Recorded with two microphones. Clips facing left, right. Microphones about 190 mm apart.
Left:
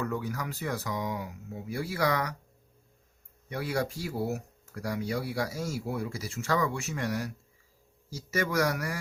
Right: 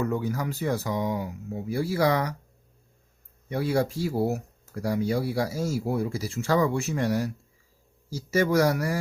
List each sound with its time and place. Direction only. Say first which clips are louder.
0.0 s speech: right 5 dB; 25° right (ahead or behind)
3.5 s a man's voice: right 6 dB; 30° right (ahead or behind)